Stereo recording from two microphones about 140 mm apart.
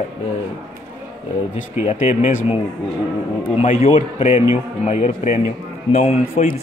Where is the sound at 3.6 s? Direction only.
65° left (ahead or behind).